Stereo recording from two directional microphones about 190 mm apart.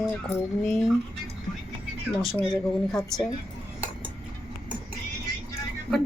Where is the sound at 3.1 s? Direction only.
Centre (ahead or behind).